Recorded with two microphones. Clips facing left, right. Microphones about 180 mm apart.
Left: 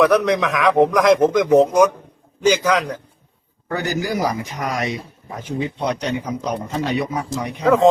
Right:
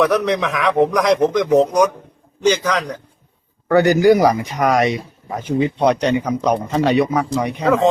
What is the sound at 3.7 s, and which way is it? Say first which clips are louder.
Speech: right 11 dB; 70° right (ahead or behind).